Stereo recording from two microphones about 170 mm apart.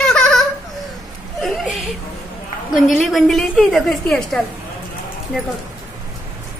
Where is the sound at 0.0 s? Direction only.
5° left (ahead or behind).